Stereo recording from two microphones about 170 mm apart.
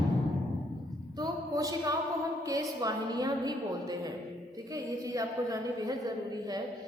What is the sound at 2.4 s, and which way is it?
A woman's voice, 20° right (ahead or behind).